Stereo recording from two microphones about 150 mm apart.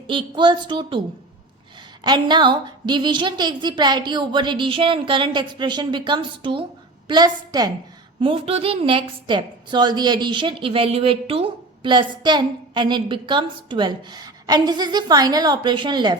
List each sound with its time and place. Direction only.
0.1 s a woman's voice: 30° right (ahead or behind)
2.0 s a woman's voice: 30° right (ahead or behind)
8.2 s a woman's voice: 40° right (ahead or behind)